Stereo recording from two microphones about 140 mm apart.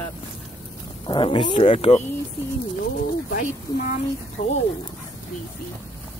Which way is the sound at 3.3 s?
70° left (ahead or behind).